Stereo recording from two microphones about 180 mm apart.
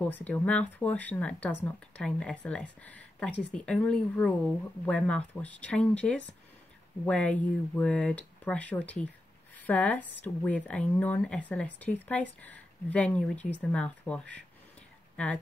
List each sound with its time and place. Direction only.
0.0 s speech: 10° left (ahead or behind)